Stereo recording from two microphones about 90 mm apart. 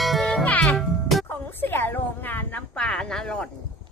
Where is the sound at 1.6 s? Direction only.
25° left (ahead or behind).